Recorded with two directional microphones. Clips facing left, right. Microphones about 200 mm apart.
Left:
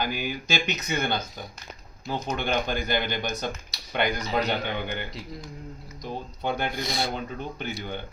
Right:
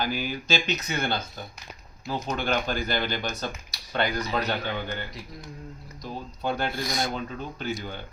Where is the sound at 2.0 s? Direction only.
15° left (ahead or behind).